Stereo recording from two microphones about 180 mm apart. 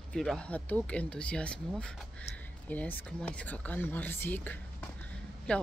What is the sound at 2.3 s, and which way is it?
Speech, 35° left (ahead or behind).